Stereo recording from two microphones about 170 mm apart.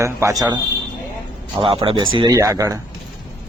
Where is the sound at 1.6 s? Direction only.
35° right (ahead or behind).